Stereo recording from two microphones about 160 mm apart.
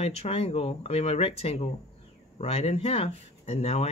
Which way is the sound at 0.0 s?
40° left (ahead or behind).